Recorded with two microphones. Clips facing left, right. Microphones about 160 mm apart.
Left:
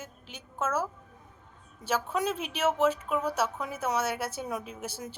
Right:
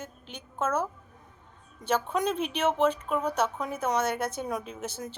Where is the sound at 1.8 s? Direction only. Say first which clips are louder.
Right 2 dB; 5° left (ahead or behind).